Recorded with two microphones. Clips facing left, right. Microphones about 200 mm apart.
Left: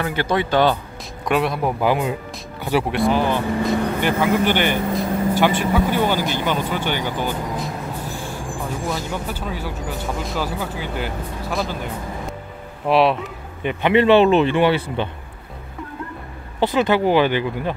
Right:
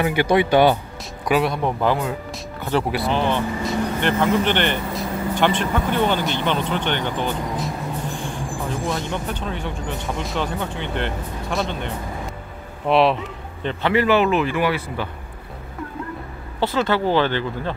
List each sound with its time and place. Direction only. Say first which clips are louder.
0.0 s speech: right 3 dB; 15° right (ahead or behind)
1.2 s speech: even; centre (ahead or behind)
2.9 s speech: left 2 dB; 5° left (ahead or behind)
13.6 s a man's voice: left 2 dB; 10° left (ahead or behind)
13.9 s speech: left 5 dB; 25° left (ahead or behind)
16.5 s speech: left 3 dB; 15° left (ahead or behind)